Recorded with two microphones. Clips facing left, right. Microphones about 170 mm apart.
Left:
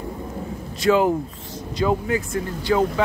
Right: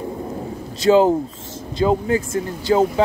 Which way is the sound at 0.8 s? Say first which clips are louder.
Right 4 dB; 30° right (ahead or behind).